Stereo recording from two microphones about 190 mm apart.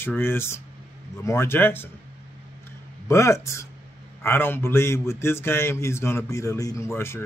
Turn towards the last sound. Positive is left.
turn(degrees=15)  # may be behind; listen again after turning